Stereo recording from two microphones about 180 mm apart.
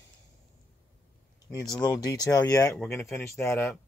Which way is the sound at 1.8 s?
20° left (ahead or behind).